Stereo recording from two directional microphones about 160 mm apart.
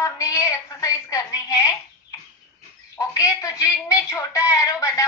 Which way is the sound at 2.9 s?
20° left (ahead or behind).